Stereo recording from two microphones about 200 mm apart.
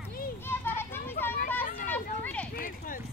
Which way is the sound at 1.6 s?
45° left (ahead or behind).